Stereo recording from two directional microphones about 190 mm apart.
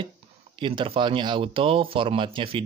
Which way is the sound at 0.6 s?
25° right (ahead or behind).